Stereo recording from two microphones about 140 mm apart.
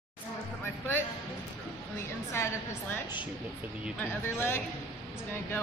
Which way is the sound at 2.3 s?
20° left (ahead or behind).